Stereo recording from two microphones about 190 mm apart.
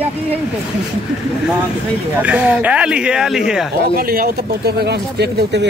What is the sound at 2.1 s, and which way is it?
Speech, 10° right (ahead or behind).